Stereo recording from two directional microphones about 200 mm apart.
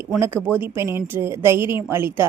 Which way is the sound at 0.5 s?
10° right (ahead or behind).